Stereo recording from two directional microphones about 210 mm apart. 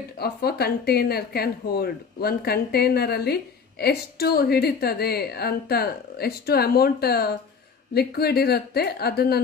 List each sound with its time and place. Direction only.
0.2 s speech: 50° left (ahead or behind)